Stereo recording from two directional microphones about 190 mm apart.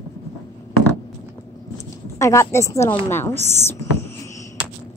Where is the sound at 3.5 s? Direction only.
15° left (ahead or behind).